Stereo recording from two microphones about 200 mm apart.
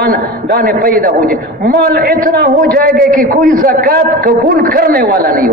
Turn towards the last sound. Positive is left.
turn(degrees=-45)  # may be behind; listen again after turning